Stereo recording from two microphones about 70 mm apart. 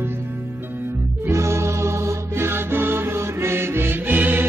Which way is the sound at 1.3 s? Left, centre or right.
Right.